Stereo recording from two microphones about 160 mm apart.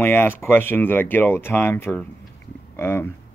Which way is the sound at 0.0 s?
15° left (ahead or behind).